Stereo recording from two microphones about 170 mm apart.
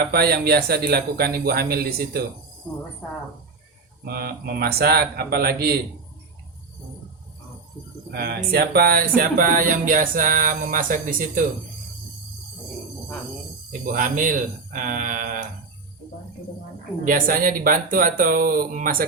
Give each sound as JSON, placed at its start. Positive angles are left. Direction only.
{"t": 0.1, "sound": "speech", "side_deg": -70}
{"t": 4.0, "sound": "speech", "side_deg": -65}
{"t": 8.1, "sound": "speech", "side_deg": -70}
{"t": 13.8, "sound": "speech", "side_deg": -50}
{"t": 17.0, "sound": "speech", "side_deg": -55}